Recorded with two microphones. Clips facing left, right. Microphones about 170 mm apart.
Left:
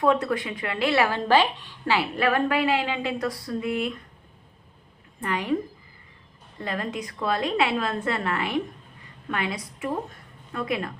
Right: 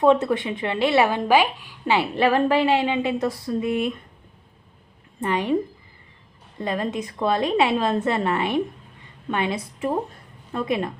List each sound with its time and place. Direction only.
0.0 s speech: 25° right (ahead or behind)
1.9 s speech: 25° right (ahead or behind)
5.2 s speech: 25° right (ahead or behind)
6.6 s a woman's voice: 20° right (ahead or behind)